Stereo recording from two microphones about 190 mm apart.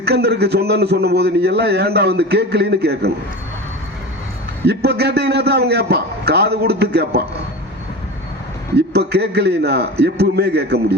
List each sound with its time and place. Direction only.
0.0 s a man's voice: 60° right (ahead or behind)
4.6 s a man's voice: 60° right (ahead or behind)
8.9 s a man's voice: 60° right (ahead or behind)